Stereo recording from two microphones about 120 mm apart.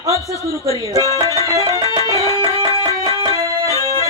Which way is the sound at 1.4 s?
30° right (ahead or behind).